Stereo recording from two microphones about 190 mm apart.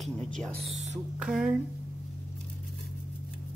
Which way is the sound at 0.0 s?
5° left (ahead or behind).